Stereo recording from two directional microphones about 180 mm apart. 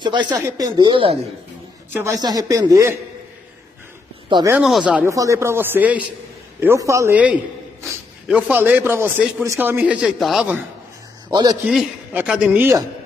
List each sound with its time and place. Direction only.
0.0 s speech: 25° right (ahead or behind)
1.9 s speech: 15° right (ahead or behind)
4.3 s speech: 25° right (ahead or behind)
4.6 s speech: 5° right (ahead or behind)
5.1 s a man's voice: 15° right (ahead or behind)
11.2 s a man's voice: 20° right (ahead or behind)
11.6 s a man's voice: 5° right (ahead or behind)